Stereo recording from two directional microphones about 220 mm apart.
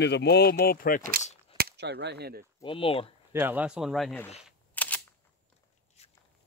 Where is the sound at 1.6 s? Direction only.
45° right (ahead or behind).